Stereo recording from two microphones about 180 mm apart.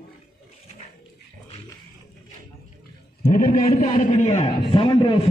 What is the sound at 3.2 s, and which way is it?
Speech, 55° left (ahead or behind).